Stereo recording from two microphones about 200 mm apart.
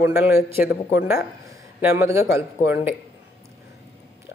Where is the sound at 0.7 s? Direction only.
50° left (ahead or behind).